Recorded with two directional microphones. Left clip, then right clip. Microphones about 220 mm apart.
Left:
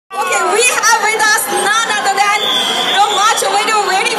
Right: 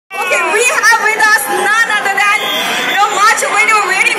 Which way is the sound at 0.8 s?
45° left (ahead or behind).